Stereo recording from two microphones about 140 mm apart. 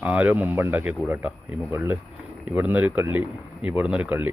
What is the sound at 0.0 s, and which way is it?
Speech, 10° right (ahead or behind).